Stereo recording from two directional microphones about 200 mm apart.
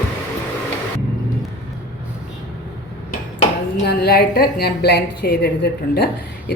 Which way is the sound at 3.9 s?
50° left (ahead or behind).